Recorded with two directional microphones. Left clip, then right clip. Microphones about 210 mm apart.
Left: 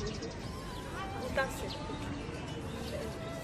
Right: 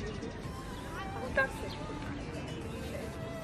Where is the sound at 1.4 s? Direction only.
50° left (ahead or behind).